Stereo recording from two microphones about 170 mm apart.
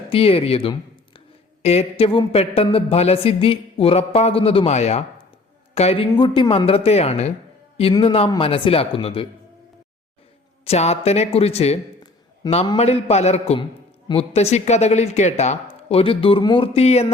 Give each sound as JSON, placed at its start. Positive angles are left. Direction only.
{"t": 0.1, "sound": "speech", "side_deg": 35}
{"t": 10.7, "sound": "speech", "side_deg": 40}